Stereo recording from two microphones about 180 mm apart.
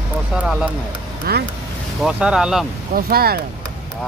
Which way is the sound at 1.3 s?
60° right (ahead or behind).